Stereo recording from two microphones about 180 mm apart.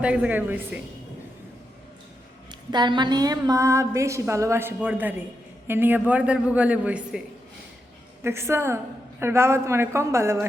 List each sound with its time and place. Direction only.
0.0 s a woman's voice: 5° right (ahead or behind)
2.5 s a woman's voice: 25° right (ahead or behind); by 7.2 s 5° right (ahead or behind)
8.2 s a woman's voice: 15° right (ahead or behind)